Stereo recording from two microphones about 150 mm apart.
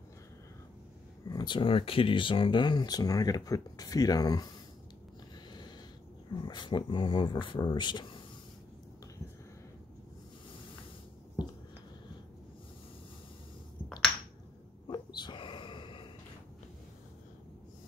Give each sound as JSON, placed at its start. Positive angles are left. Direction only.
{"t": 1.3, "sound": "speech", "side_deg": 30}
{"t": 6.3, "sound": "speech", "side_deg": 30}
{"t": 14.9, "sound": "a sound", "side_deg": 30}